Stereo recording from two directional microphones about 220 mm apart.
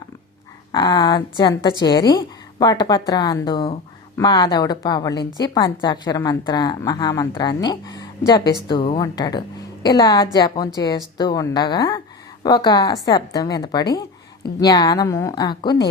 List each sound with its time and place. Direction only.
0.7 s a woman's voice: 20° left (ahead or behind)